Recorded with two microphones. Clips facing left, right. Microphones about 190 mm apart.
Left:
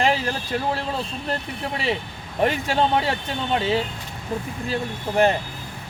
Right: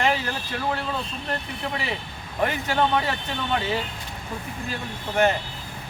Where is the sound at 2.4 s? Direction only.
30° left (ahead or behind).